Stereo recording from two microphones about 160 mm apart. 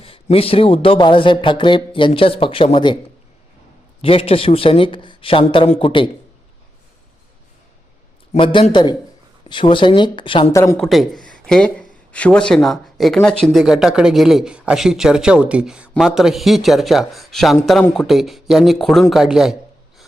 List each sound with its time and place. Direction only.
0.0 s speech: 35° left (ahead or behind)
4.0 s speech: 35° left (ahead or behind)
8.3 s speech: 35° left (ahead or behind)
10.5 s speech: 15° left (ahead or behind)
10.8 s speech: centre (ahead or behind)